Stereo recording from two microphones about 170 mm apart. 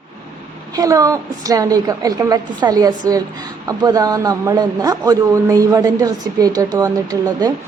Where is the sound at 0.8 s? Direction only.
20° right (ahead or behind).